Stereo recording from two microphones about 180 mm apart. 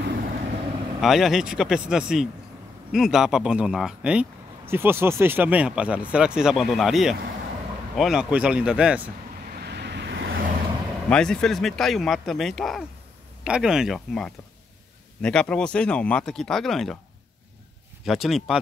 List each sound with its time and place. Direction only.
0.0 s vehicle: 55° right (ahead or behind)
1.0 s speech: centre (ahead or behind)
9.6 s vehicle: 65° right (ahead or behind)
11.1 s speech: 5° left (ahead or behind)
18.0 s speech: centre (ahead or behind)